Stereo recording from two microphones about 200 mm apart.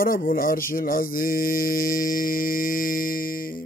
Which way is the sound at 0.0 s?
45° left (ahead or behind).